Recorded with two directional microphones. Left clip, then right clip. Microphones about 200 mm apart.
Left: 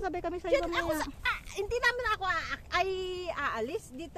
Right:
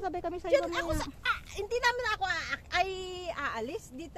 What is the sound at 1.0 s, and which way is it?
Speech, 30° left (ahead or behind).